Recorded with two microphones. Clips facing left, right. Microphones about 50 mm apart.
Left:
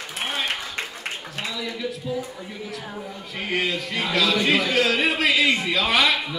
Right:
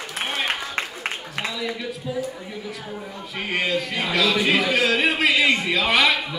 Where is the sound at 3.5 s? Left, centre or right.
Centre.